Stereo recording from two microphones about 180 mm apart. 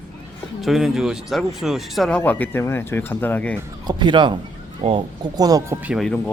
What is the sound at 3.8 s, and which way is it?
Speech, 25° right (ahead or behind).